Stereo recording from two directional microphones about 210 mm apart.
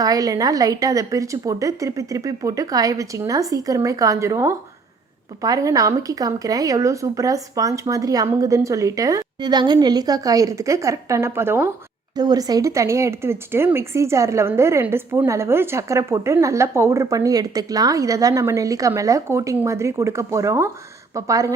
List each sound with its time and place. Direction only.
0.0 s speech: 15° right (ahead or behind)